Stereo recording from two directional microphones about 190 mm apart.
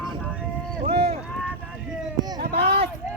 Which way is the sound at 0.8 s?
30° right (ahead or behind).